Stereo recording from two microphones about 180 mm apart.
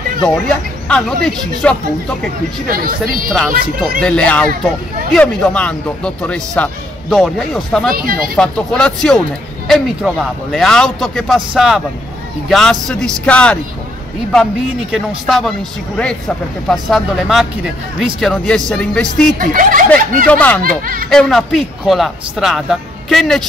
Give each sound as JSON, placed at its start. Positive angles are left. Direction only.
{"t": 0.2, "sound": "speech", "side_deg": 5}
{"t": 2.7, "sound": "speech", "side_deg": -55}
{"t": 4.0, "sound": "speech", "side_deg": 5}
{"t": 7.9, "sound": "speech", "side_deg": -55}
{"t": 8.4, "sound": "speech", "side_deg": 5}
{"t": 19.3, "sound": "speech", "side_deg": -50}
{"t": 20.2, "sound": "speech", "side_deg": 10}
{"t": 20.6, "sound": "speech", "side_deg": -50}
{"t": 21.1, "sound": "speech", "side_deg": 0}